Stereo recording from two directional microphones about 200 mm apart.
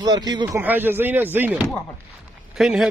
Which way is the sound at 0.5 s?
10° right (ahead or behind).